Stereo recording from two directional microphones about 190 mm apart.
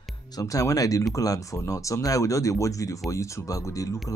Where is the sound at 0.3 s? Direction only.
20° left (ahead or behind).